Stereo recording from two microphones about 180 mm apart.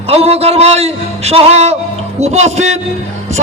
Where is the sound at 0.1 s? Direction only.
35° right (ahead or behind).